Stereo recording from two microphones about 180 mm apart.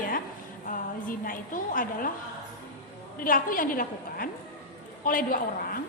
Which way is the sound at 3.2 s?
50° left (ahead or behind).